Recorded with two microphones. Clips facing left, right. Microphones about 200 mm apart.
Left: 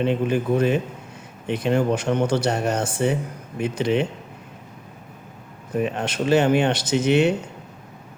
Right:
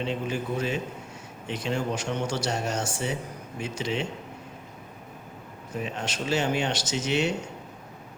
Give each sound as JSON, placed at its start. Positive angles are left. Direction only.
{"t": 0.0, "sound": "speech", "side_deg": 55}
{"t": 5.7, "sound": "speech", "side_deg": 55}